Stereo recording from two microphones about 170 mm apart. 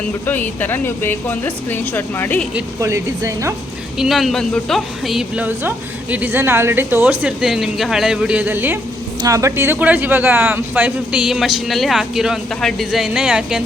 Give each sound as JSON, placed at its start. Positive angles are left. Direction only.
{"t": 0.3, "sound": "speech", "side_deg": 10}
{"t": 2.8, "sound": "a woman's voice", "side_deg": -15}
{"t": 3.9, "sound": "a woman's voice", "side_deg": 0}